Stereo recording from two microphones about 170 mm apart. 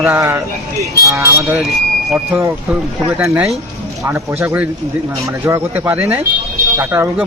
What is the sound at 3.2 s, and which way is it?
Speech, 15° right (ahead or behind).